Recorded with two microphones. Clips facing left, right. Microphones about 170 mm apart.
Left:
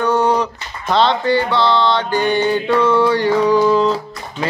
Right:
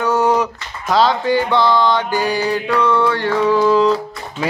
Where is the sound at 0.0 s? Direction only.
5° right (ahead or behind).